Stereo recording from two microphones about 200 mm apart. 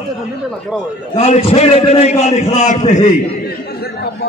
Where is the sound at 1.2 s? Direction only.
30° left (ahead or behind).